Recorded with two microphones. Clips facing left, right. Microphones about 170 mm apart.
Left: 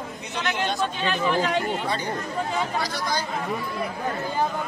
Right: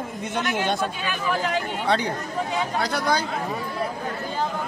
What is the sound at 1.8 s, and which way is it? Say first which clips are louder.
Speech: right 4 dB; 70° right (ahead or behind).